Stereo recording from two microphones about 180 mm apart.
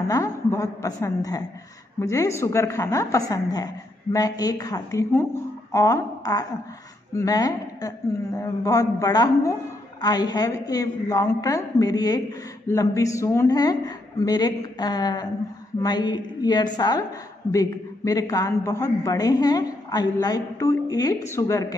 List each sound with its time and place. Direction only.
0.1 s a woman's voice: 15° left (ahead or behind)